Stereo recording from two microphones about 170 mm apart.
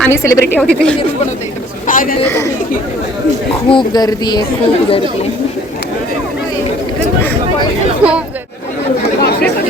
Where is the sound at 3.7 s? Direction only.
25° left (ahead or behind).